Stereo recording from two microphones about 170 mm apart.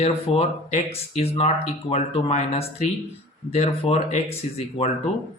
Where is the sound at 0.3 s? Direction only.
35° left (ahead or behind).